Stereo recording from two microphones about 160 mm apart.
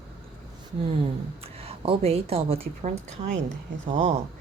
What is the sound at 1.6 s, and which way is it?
A woman's voice, 35° right (ahead or behind).